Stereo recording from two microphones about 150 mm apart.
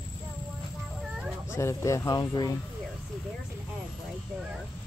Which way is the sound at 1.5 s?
20° left (ahead or behind).